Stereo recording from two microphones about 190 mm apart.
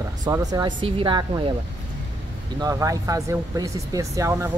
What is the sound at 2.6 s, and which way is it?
Speech, 15° right (ahead or behind).